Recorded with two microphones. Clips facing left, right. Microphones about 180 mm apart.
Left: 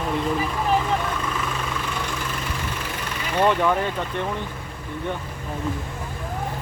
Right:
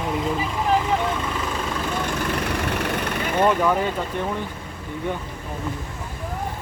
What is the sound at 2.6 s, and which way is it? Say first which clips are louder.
Vehicle: right 6 dB; 65° right (ahead or behind).